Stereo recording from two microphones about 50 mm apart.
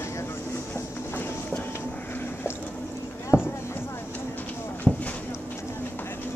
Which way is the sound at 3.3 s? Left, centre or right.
Left.